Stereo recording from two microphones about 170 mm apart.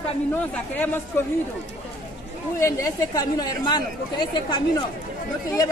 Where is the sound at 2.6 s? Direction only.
20° left (ahead or behind).